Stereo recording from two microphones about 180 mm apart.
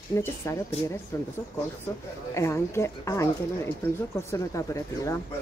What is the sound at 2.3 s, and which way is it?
Speech, 15° left (ahead or behind).